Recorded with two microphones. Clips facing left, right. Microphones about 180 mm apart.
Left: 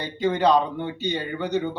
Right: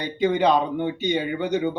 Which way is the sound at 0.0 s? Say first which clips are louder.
Right 1 dB; 15° right (ahead or behind).